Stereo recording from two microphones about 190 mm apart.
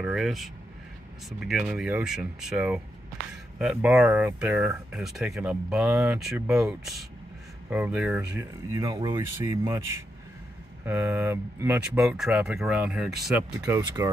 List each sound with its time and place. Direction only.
0.0 s speech: 5° right (ahead or behind)
10.9 s speech: 10° right (ahead or behind)
13.7 s speech: 20° right (ahead or behind)